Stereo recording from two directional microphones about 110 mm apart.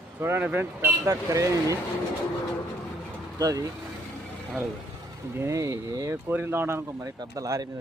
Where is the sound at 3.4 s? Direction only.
30° right (ahead or behind).